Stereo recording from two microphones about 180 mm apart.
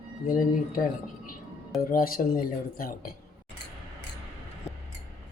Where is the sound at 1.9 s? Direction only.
50° left (ahead or behind).